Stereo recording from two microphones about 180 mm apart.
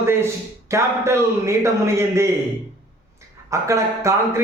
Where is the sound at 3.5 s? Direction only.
15° right (ahead or behind).